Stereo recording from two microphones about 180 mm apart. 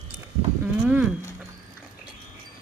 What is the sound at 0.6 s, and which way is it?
Livestock, 10° right (ahead or behind).